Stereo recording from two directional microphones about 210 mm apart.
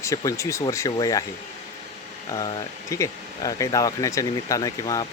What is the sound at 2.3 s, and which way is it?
Speech, 20° left (ahead or behind).